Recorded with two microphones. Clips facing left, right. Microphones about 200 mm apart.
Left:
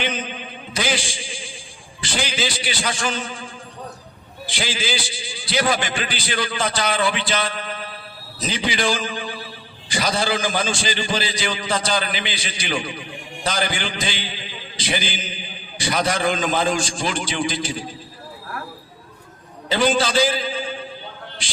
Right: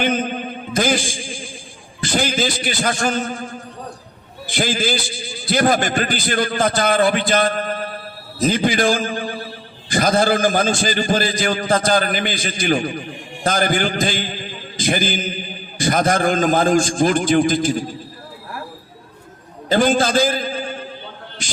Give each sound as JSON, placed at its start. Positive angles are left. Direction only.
{"t": 0.0, "sound": "a sound", "side_deg": -50}
{"t": 2.0, "sound": "a man's voice", "side_deg": -50}
{"t": 19.6, "sound": "a man's voice", "side_deg": -50}